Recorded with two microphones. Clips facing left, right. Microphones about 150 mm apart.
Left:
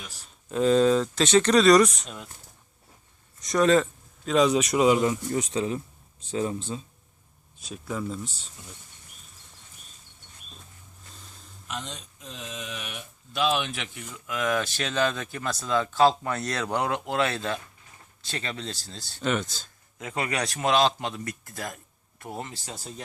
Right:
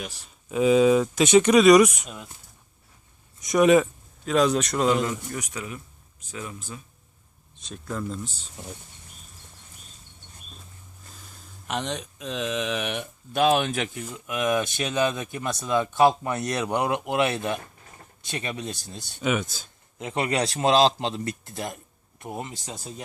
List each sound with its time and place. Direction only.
0.4 s speech: 5° right (ahead or behind)
3.4 s speech: 15° right (ahead or behind)
4.3 s a man's voice: centre (ahead or behind); by 6.8 s 25° left (ahead or behind)
7.6 s speech: 5° left (ahead or behind)
11.7 s speech: 75° right (ahead or behind); by 14.2 s 40° right (ahead or behind)
14.3 s speech: 20° right (ahead or behind)